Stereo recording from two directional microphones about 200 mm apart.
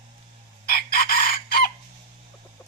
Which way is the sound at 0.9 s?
45° left (ahead or behind).